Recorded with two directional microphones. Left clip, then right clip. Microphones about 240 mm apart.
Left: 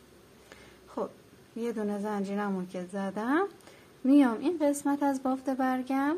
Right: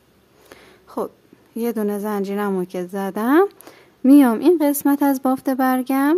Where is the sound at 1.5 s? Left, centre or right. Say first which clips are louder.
Right 10 dB; right.